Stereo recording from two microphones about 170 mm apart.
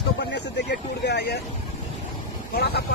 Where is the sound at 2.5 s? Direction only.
75° left (ahead or behind).